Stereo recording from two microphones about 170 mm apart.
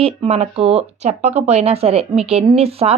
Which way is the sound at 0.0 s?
40° right (ahead or behind).